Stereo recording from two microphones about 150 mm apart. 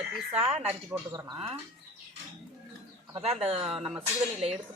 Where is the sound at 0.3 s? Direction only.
40° right (ahead or behind).